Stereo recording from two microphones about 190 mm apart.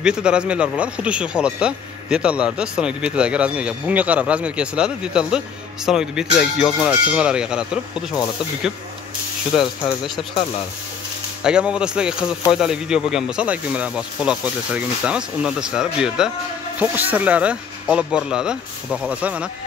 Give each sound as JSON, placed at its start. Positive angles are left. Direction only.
{"t": 0.0, "sound": "speech", "side_deg": -5}
{"t": 9.6, "sound": "speech", "side_deg": 0}
{"t": 11.4, "sound": "speech", "side_deg": -5}